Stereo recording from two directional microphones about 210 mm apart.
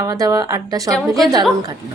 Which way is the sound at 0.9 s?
Centre (ahead or behind).